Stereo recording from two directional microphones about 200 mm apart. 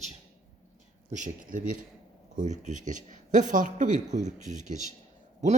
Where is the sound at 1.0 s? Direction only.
40° right (ahead or behind).